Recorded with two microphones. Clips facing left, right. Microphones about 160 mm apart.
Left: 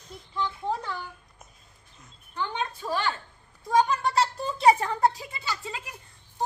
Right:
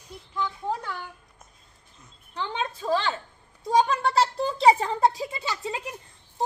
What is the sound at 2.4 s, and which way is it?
Speech, 25° right (ahead or behind).